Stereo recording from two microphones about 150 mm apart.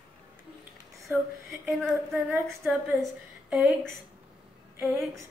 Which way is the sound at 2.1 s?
15° right (ahead or behind).